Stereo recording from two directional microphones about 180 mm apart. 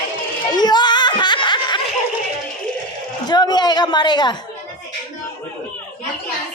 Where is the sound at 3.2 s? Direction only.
25° left (ahead or behind).